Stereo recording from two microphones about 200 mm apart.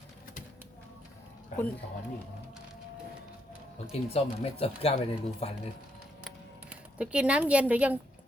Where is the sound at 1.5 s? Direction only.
40° left (ahead or behind).